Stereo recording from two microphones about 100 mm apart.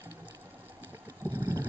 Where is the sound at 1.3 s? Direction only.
25° right (ahead or behind).